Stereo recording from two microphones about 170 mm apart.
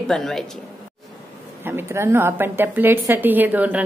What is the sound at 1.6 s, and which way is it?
A woman's voice, 15° right (ahead or behind).